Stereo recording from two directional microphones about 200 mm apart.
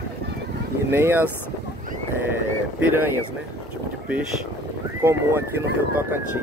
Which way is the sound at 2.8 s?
10° right (ahead or behind).